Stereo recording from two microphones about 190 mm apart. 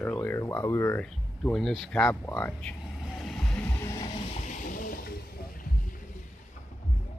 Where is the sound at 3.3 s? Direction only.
10° left (ahead or behind).